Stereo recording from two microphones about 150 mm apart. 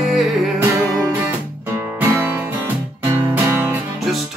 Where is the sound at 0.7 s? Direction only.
20° right (ahead or behind).